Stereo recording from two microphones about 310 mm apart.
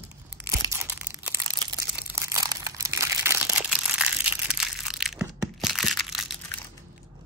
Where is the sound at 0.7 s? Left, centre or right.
Centre.